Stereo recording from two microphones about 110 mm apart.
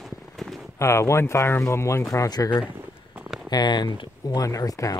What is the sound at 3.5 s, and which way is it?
Speech, 40° left (ahead or behind).